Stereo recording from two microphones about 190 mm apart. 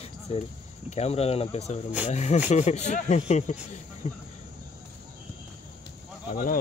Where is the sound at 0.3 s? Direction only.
30° left (ahead or behind).